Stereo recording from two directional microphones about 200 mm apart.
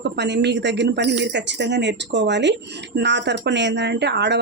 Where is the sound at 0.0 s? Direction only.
55° right (ahead or behind).